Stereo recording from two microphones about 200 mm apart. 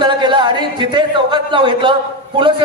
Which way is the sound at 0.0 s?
25° right (ahead or behind).